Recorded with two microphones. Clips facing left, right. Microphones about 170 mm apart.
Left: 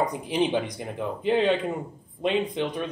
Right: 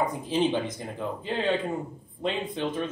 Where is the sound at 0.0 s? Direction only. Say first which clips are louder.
Left 1 dB; 15° left (ahead or behind).